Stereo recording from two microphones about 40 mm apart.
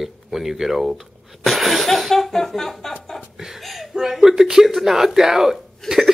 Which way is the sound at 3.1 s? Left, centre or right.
Centre.